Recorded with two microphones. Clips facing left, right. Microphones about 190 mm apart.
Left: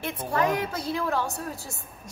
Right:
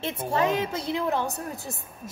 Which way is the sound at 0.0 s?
25° right (ahead or behind).